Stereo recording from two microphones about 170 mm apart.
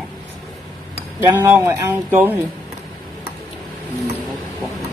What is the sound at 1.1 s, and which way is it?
Speech, 15° right (ahead or behind).